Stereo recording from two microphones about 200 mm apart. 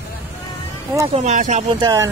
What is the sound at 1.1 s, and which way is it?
Speech, 35° right (ahead or behind).